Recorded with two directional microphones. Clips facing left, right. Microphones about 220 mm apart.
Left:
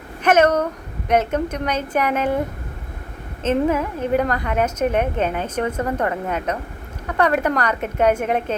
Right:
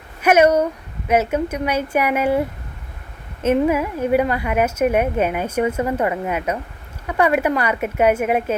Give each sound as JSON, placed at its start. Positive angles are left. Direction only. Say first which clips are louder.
{"t": 0.2, "sound": "a woman's voice", "louder": "right 2 dB", "side_deg": -10}
{"t": 3.4, "sound": "a woman's voice", "louder": "right 2 dB", "side_deg": -10}